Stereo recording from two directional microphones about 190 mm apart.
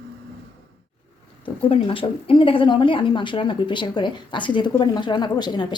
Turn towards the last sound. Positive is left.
turn(degrees=25)  # may be behind; listen again after turning